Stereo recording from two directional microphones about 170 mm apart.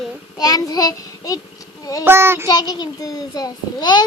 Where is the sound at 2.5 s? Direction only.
25° left (ahead or behind).